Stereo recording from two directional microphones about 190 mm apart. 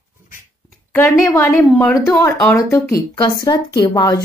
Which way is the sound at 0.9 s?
10° left (ahead or behind).